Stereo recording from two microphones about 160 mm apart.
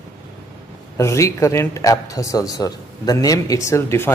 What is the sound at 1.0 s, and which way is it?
Speech, 20° left (ahead or behind).